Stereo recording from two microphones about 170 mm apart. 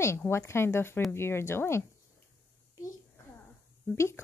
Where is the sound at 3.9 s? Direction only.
15° left (ahead or behind).